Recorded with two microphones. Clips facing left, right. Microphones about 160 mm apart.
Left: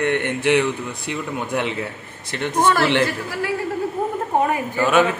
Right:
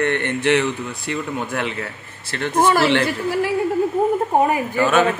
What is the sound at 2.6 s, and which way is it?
Speech, 10° right (ahead or behind).